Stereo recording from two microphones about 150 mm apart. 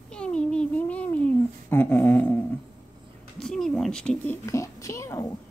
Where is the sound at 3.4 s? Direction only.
5° left (ahead or behind).